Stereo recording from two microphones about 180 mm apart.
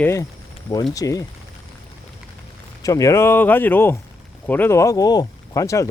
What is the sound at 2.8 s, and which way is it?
Speech, 20° left (ahead or behind).